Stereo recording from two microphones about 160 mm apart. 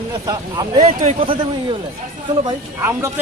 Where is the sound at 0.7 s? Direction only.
45° right (ahead or behind).